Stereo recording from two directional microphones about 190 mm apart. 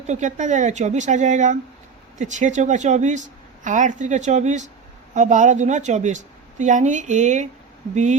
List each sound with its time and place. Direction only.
0.1 s speech: 40° right (ahead or behind)